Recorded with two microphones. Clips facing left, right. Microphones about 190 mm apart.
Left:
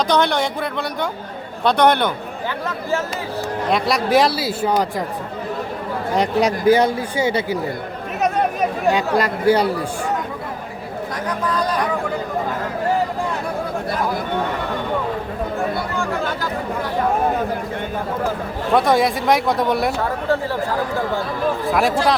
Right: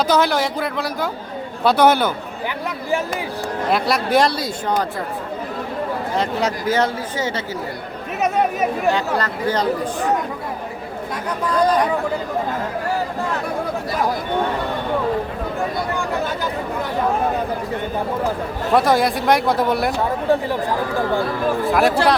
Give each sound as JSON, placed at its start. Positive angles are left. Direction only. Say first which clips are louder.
{"t": 0.1, "sound": "speech", "louder": "even", "side_deg": -5}
{"t": 3.7, "sound": "speech", "louder": "left 1 dB", "side_deg": 0}
{"t": 6.1, "sound": "speech", "louder": "left 5 dB", "side_deg": 15}
{"t": 8.9, "sound": "speech", "louder": "left 2 dB", "side_deg": 15}
{"t": 18.7, "sound": "speech", "louder": "even", "side_deg": 0}
{"t": 20.2, "sound": "speech", "louder": "right 3 dB", "side_deg": -15}
{"t": 21.7, "sound": "speech", "louder": "right 2 dB", "side_deg": 0}